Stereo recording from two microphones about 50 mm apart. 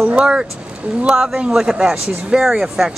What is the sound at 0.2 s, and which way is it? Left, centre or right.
A man's voice, centre.